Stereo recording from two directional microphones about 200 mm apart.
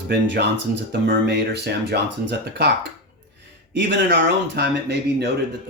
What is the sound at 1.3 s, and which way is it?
Speech, 55° right (ahead or behind).